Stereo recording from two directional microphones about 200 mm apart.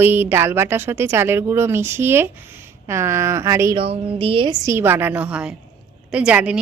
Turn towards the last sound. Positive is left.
turn(degrees=-5)  # may be behind; listen again after turning